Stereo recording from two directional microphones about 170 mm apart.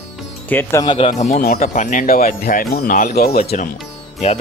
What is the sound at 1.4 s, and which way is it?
Speech, 60° left (ahead or behind).